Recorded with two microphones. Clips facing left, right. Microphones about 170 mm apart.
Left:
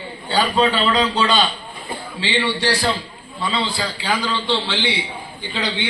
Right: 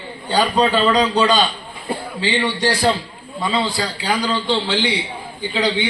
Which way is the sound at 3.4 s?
40° right (ahead or behind).